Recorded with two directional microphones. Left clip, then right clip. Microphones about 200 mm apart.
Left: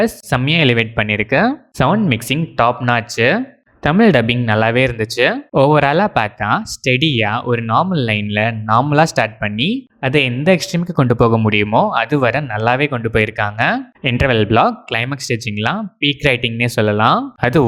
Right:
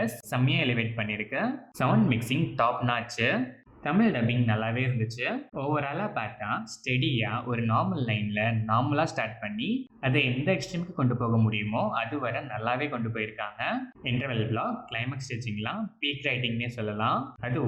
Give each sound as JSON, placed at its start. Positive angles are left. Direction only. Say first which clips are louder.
{"t": 0.0, "sound": "speech", "louder": "left 14 dB", "side_deg": 50}